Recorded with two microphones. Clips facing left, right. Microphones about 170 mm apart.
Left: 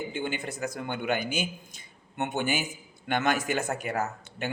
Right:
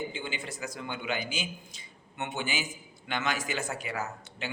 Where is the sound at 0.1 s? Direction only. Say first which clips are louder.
Left 5 dB; 55° left (ahead or behind).